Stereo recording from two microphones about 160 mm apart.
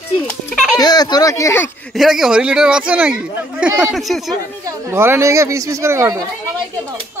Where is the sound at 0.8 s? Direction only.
25° left (ahead or behind).